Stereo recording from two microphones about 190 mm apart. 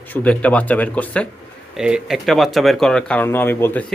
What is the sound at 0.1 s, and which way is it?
A man's voice, 5° left (ahead or behind).